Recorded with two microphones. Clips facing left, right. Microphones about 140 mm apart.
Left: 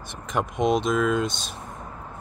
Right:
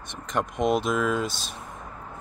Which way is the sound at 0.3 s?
Centre (ahead or behind).